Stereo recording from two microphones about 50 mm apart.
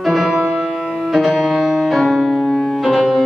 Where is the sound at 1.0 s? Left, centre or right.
Centre.